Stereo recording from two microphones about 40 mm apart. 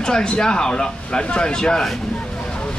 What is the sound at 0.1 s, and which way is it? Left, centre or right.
Speech, centre.